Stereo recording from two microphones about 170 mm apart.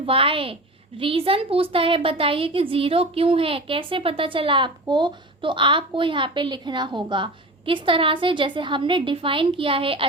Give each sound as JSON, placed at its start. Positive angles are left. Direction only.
{"t": 0.0, "sound": "a woman's voice", "side_deg": -35}